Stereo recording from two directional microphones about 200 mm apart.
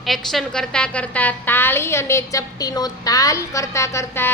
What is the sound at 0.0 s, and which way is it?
A woman's voice, centre (ahead or behind).